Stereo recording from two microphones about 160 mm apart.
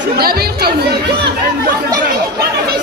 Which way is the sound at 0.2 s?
75° right (ahead or behind).